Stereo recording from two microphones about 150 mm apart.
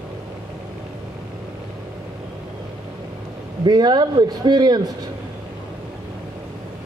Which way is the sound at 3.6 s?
30° right (ahead or behind).